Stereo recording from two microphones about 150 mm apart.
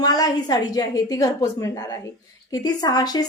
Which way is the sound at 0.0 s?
25° left (ahead or behind).